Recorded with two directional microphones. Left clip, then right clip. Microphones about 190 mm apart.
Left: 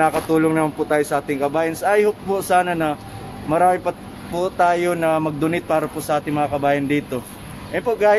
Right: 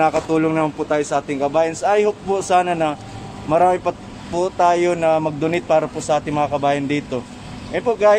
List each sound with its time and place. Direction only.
0.0 s speech: 10° right (ahead or behind)